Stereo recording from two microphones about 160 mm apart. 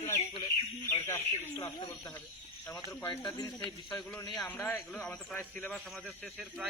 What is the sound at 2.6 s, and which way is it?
A man's voice, 10° left (ahead or behind).